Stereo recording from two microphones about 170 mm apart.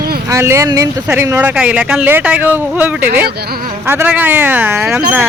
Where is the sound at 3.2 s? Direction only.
70° right (ahead or behind).